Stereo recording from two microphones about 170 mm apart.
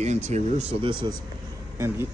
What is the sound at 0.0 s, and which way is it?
Speech, 40° right (ahead or behind).